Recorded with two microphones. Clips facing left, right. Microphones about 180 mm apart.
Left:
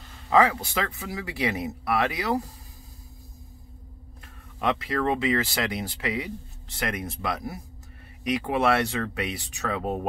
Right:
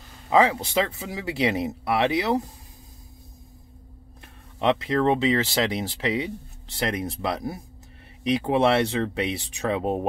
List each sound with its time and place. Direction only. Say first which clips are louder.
0.3 s speech: right 1 dB; 25° right (ahead or behind)
4.6 s speech: right 4 dB; 25° right (ahead or behind)